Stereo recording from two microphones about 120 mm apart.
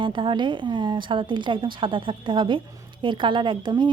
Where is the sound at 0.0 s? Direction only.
45° right (ahead or behind).